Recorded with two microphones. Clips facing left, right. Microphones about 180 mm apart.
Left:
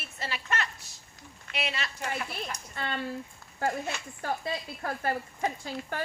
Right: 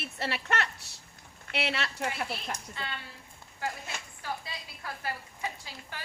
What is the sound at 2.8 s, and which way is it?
Speech, 50° left (ahead or behind).